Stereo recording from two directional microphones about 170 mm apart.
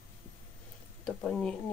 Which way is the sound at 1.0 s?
5° left (ahead or behind).